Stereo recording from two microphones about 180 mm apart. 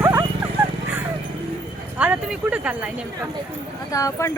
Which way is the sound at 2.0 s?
5° right (ahead or behind).